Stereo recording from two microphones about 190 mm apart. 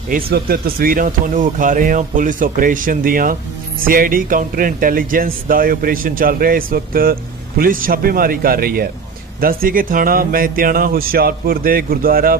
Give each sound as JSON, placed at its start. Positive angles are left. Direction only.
{"t": 0.3, "sound": "speech", "side_deg": -55}